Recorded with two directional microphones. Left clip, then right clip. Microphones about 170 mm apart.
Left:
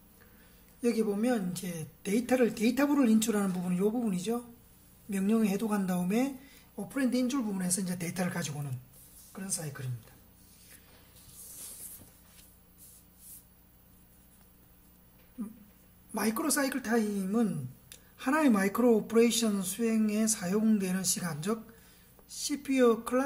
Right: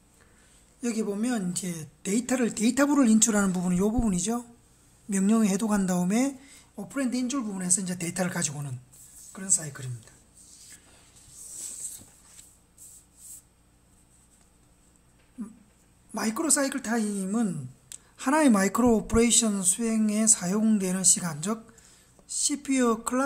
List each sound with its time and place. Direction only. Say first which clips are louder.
0.7 s speech: left 1 dB; 30° right (ahead or behind)
6.7 s a woman's voice: right 1 dB; 20° right (ahead or behind)
16.1 s speech: right 3 dB; 25° right (ahead or behind)